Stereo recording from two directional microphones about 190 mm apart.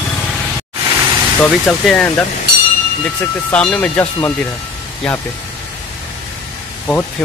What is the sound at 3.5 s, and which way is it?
Speech, 5° left (ahead or behind).